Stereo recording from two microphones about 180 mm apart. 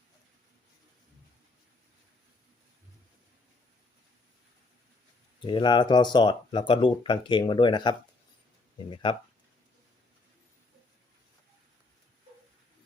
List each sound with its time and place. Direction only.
5.4 s speech: 25° left (ahead or behind)